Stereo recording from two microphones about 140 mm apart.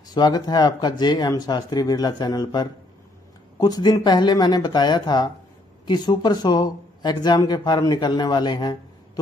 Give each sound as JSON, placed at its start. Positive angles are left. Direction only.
{"t": 0.1, "sound": "speech", "side_deg": 30}